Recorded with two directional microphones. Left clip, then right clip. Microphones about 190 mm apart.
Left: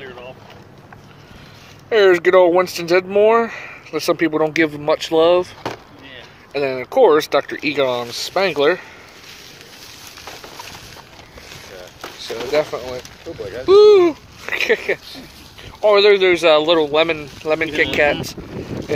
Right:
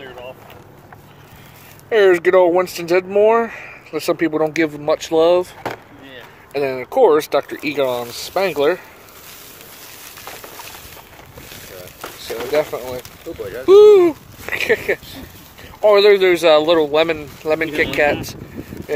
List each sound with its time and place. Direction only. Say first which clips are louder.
1.9 s speech: even; 5° right (ahead or behind)
6.5 s speech: left 1 dB; 10° right (ahead or behind)
12.2 s pigeon: even; 5° right (ahead or behind)
13.7 s speech: right 1 dB; 20° right (ahead or behind)
14.4 s speech: even; centre (ahead or behind)
15.8 s speech: right 1 dB; 20° right (ahead or behind)